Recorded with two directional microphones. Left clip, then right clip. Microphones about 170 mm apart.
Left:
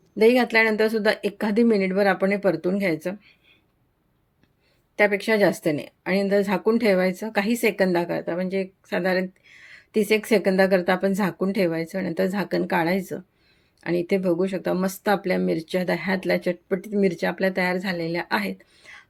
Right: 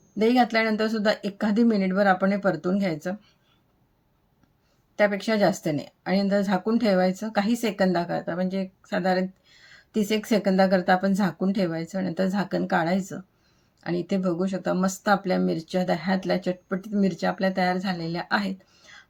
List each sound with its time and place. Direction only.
0.2 s speech: 10° left (ahead or behind)
4.9 s speech: 10° left (ahead or behind)